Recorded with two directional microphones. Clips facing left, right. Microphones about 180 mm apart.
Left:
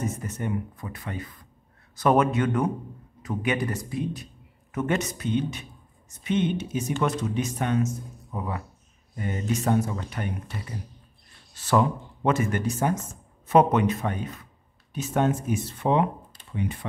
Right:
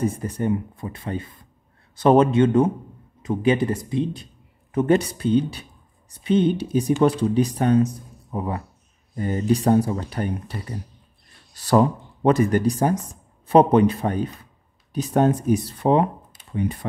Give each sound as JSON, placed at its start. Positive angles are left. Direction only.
{"t": 0.0, "sound": "speech", "side_deg": -30}